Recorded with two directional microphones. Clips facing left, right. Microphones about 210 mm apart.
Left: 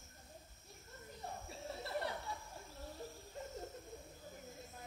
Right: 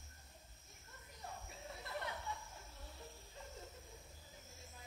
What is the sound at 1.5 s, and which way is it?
Chuckle, 35° left (ahead or behind).